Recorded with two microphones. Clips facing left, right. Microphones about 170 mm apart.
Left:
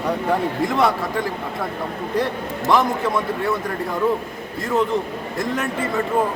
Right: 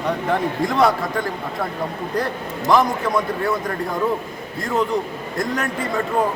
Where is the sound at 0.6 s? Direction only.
Centre (ahead or behind).